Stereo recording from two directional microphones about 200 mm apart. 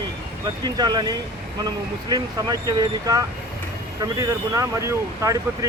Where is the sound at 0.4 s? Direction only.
20° right (ahead or behind).